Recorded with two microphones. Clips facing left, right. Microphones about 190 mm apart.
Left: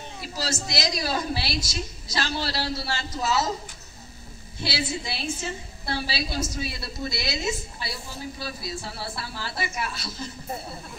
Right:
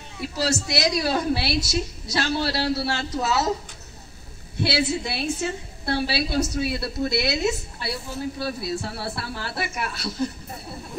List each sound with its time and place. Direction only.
0.4 s a woman's voice: 60° right (ahead or behind)
4.6 s a woman's voice: 60° right (ahead or behind)